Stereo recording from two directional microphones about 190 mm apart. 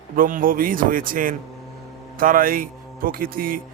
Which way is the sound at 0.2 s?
45° right (ahead or behind).